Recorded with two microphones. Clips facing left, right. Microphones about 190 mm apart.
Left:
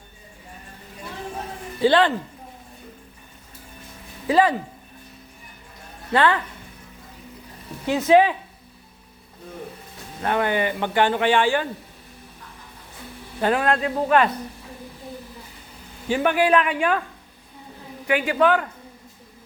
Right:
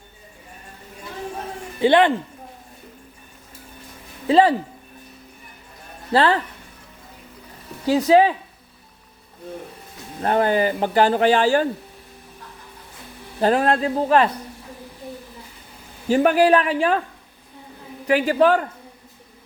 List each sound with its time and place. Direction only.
1.8 s speech: 20° right (ahead or behind)
4.3 s speech: 30° right (ahead or behind)
6.1 s speech: 30° right (ahead or behind)
7.9 s speech: 35° right (ahead or behind)
10.2 s speech: 35° right (ahead or behind)
13.4 s speech: 35° right (ahead or behind)
16.0 s speech: 40° right (ahead or behind)
18.1 s speech: 35° right (ahead or behind)